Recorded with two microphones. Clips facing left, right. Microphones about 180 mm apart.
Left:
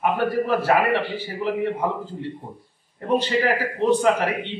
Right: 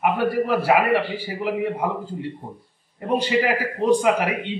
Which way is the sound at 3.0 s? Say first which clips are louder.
Left 1 dB; 10° right (ahead or behind).